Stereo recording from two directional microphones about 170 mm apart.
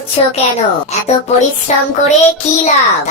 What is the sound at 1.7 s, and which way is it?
Child singing, 45° left (ahead or behind).